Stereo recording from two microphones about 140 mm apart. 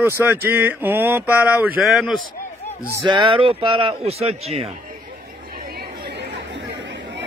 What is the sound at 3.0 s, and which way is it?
Speech, 35° right (ahead or behind).